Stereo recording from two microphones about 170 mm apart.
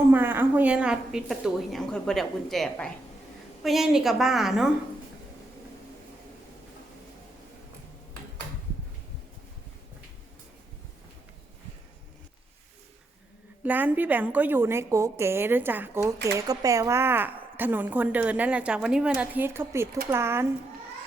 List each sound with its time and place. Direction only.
0.1 s a woman's voice: 10° right (ahead or behind)
13.7 s a woman's voice: 10° right (ahead or behind)